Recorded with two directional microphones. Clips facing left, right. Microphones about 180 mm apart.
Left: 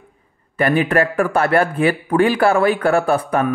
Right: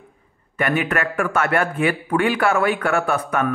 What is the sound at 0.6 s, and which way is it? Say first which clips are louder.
Speech: left 5 dB; 35° left (ahead or behind).